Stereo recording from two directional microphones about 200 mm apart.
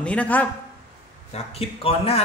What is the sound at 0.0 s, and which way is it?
Speech, 5° left (ahead or behind).